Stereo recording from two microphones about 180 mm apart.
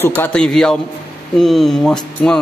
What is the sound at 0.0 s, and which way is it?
A man's voice, 10° left (ahead or behind).